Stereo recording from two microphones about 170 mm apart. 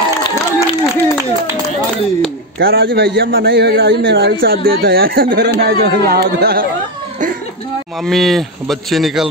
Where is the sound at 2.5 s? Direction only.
65° right (ahead or behind).